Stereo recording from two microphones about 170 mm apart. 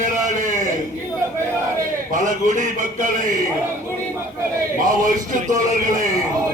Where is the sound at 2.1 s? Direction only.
50° right (ahead or behind).